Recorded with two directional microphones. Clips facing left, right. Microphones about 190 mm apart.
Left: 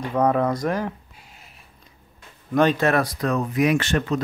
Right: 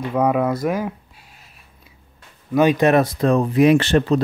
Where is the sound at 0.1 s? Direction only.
5° right (ahead or behind).